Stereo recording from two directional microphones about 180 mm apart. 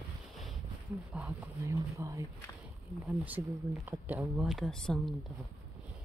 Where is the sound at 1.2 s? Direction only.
5° right (ahead or behind).